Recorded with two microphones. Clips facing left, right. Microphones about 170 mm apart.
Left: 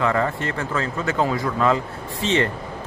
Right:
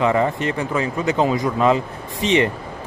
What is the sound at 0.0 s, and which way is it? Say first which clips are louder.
Speech: right 3 dB; 20° right (ahead or behind).